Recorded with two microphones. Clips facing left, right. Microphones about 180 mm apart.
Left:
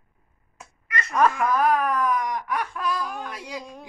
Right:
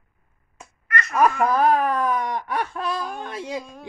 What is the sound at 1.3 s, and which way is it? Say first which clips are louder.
A woman's voice: right 3 dB; 30° right (ahead or behind).